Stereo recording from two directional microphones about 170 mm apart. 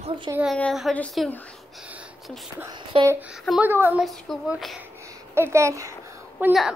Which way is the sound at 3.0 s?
10° right (ahead or behind).